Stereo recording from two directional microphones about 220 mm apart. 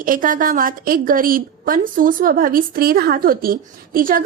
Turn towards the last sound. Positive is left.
turn(degrees=-40)  # may be behind; listen again after turning